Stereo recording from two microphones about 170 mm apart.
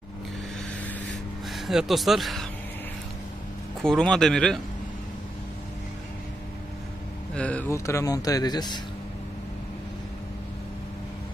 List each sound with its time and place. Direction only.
1.5 s speech: centre (ahead or behind)
3.8 s speech: 5° left (ahead or behind)
7.3 s speech: 5° left (ahead or behind); by 8.8 s 25° left (ahead or behind)